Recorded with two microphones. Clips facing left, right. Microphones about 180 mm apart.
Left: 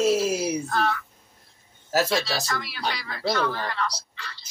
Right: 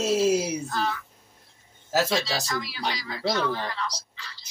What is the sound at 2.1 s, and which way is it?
Speech, 60° left (ahead or behind).